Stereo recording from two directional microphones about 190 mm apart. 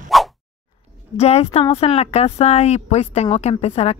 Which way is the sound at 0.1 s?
Centre (ahead or behind).